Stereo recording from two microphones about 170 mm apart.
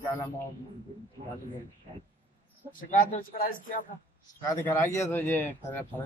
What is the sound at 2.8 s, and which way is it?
Speech, 50° left (ahead or behind).